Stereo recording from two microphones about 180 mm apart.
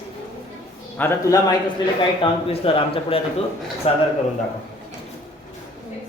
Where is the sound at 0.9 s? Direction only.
10° left (ahead or behind).